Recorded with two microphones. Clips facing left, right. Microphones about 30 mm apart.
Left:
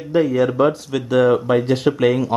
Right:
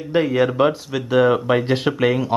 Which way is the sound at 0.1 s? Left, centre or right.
Right.